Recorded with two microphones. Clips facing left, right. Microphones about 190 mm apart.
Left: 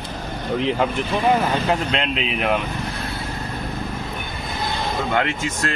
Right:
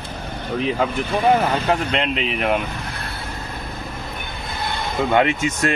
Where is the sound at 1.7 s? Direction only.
Centre (ahead or behind).